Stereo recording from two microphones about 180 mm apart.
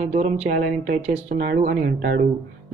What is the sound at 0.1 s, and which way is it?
Speech, 50° right (ahead or behind).